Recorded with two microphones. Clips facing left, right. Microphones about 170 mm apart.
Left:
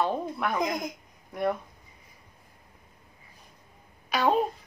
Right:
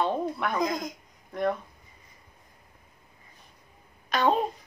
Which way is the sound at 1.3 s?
10° left (ahead or behind).